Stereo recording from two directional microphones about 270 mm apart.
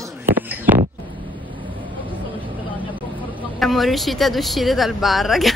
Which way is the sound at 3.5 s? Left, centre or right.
Centre.